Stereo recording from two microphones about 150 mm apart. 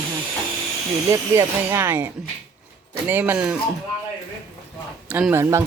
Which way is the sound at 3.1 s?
15° right (ahead or behind).